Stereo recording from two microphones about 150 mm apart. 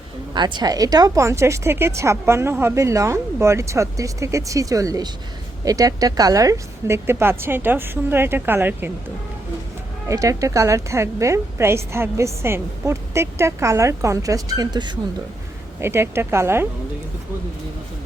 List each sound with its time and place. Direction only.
0.3 s a woman's voice: 30° right (ahead or behind); by 8.9 s 15° right (ahead or behind)
10.1 s a woman's voice: 20° right (ahead or behind)
15.8 s speech: 15° right (ahead or behind)